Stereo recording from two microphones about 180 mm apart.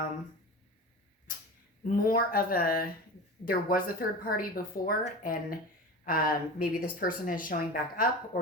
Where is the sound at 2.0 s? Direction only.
55° left (ahead or behind).